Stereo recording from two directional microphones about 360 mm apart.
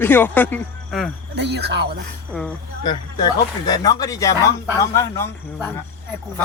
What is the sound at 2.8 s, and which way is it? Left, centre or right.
Speech, centre.